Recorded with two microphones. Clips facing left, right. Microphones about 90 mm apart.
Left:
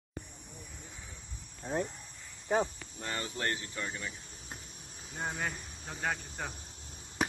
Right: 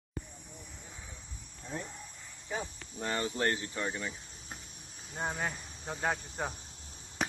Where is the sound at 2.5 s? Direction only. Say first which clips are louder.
Left 8 dB; 50° left (ahead or behind).